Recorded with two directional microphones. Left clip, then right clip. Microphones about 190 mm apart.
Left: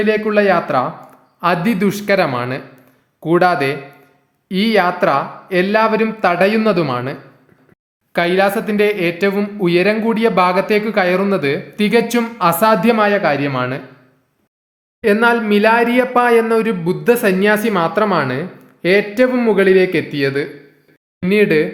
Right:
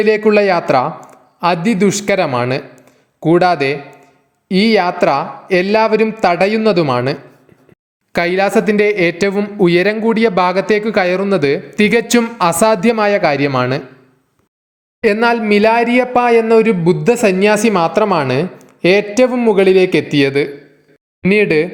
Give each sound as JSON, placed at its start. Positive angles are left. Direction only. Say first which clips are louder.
{"t": 0.0, "sound": "speech", "louder": "right 3 dB", "side_deg": -30}
{"t": 15.0, "sound": "speech", "louder": "right 1 dB", "side_deg": -30}